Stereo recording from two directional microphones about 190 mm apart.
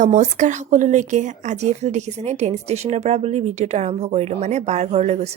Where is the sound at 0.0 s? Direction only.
40° right (ahead or behind).